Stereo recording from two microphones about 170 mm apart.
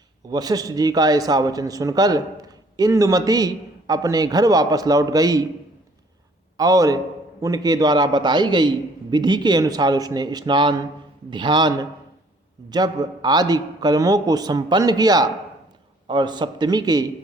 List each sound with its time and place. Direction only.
0.3 s a man's voice: 20° right (ahead or behind)
6.6 s a man's voice: 20° right (ahead or behind)